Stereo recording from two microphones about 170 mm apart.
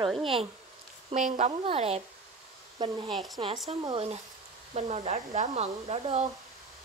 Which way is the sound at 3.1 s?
Centre (ahead or behind).